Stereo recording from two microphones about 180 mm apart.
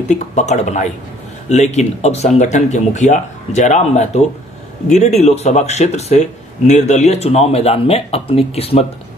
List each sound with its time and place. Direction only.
0.1 s speech: 40° left (ahead or behind)